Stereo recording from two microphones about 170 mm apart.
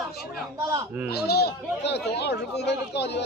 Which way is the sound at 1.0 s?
70° left (ahead or behind).